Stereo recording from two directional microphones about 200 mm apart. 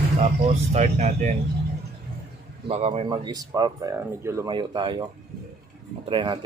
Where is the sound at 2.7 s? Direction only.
30° right (ahead or behind).